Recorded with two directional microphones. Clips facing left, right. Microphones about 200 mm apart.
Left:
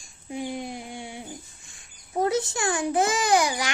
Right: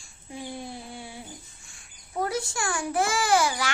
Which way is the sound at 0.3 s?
20° left (ahead or behind).